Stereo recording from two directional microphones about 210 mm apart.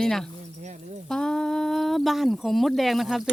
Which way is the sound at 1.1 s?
5° left (ahead or behind).